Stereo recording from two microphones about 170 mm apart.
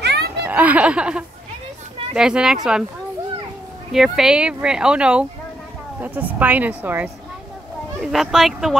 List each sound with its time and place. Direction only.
0.0 s a sound: 75° right (ahead or behind)
0.5 s speech: 10° right (ahead or behind)
3.9 s a woman's voice: centre (ahead or behind)